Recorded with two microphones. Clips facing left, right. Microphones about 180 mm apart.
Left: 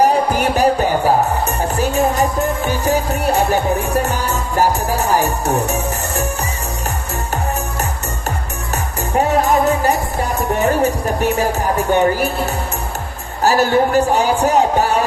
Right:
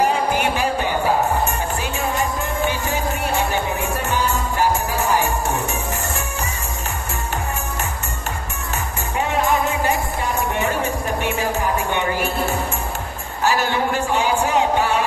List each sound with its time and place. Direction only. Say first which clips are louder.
0.0 s music: left 4 dB; 40° left (ahead or behind)
9.1 s music: left 5 dB; 40° left (ahead or behind)
13.4 s music: left 6 dB; 40° left (ahead or behind)